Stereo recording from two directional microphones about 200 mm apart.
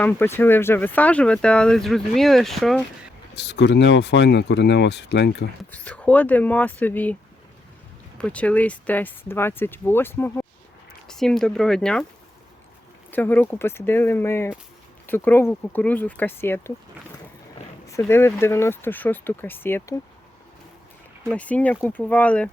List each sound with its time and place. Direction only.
0.0 s speech: 10° left (ahead or behind)
3.3 s speech: 60° left (ahead or behind)
5.7 s speech: 5° left (ahead or behind)
8.2 s speech: 5° left (ahead or behind)
13.1 s speech: 10° left (ahead or behind)
17.8 s speech: 15° left (ahead or behind)
21.2 s speech: 5° left (ahead or behind)